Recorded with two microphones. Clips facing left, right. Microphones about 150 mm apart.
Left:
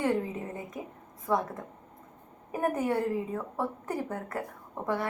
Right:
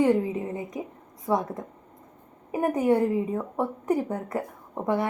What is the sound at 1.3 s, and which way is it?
A woman's voice, 20° right (ahead or behind).